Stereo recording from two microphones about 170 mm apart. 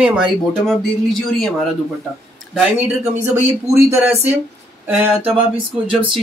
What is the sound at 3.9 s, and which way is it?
Speech, 15° right (ahead or behind).